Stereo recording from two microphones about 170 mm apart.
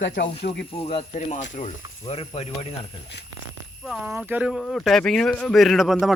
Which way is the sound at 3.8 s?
Centre (ahead or behind).